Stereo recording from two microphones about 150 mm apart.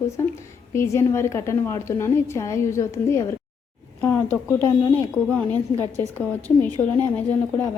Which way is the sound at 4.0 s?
10° left (ahead or behind).